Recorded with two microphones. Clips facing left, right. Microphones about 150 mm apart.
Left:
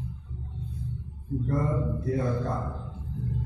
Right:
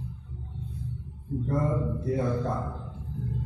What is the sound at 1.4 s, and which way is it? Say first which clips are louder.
Speech: right 1 dB; 25° right (ahead or behind).